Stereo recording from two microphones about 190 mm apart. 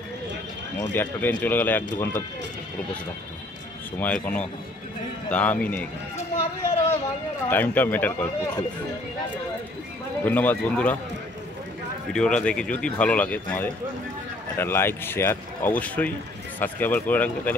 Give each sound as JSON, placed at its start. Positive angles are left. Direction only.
{"t": 0.7, "sound": "speech", "side_deg": 10}
{"t": 4.0, "sound": "speech", "side_deg": 5}
{"t": 7.4, "sound": "speech", "side_deg": 10}
{"t": 10.2, "sound": "speech", "side_deg": 10}
{"t": 12.1, "sound": "speech", "side_deg": 5}